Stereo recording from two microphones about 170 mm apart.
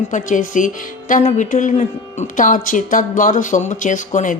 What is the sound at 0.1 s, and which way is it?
Speech, 50° left (ahead or behind).